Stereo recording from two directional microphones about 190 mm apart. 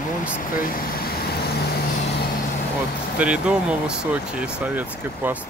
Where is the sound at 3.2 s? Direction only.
5° right (ahead or behind).